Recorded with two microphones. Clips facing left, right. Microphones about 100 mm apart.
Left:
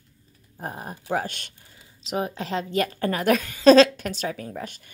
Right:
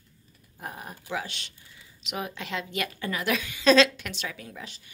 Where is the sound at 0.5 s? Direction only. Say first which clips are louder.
Left 5 dB; 35° left (ahead or behind).